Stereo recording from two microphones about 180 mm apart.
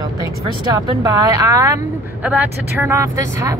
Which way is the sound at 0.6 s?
20° right (ahead or behind).